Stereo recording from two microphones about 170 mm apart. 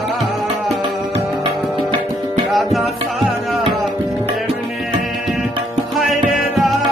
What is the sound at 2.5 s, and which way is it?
Tabla, centre (ahead or behind).